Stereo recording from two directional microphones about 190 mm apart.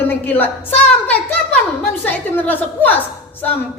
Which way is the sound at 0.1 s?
10° left (ahead or behind).